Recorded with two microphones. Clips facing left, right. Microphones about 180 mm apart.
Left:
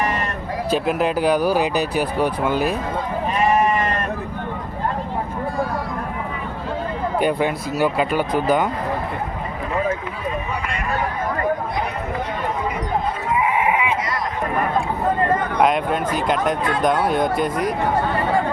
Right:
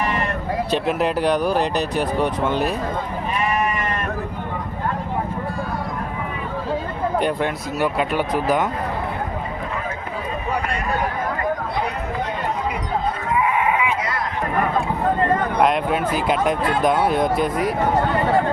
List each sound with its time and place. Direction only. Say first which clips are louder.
0.7 s speech: left 2 dB; centre (ahead or behind)
7.2 s speech: left 4 dB; 5° left (ahead or behind)
13.3 s a sound: left 1 dB; 20° left (ahead or behind)
15.6 s speech: left 1 dB; centre (ahead or behind)